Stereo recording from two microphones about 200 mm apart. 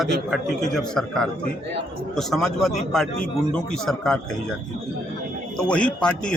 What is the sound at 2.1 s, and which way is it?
A man's voice, centre (ahead or behind).